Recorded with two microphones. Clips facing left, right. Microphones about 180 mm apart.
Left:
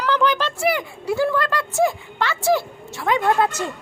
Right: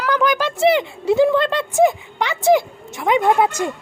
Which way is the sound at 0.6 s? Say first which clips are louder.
Right 6 dB; 25° right (ahead or behind).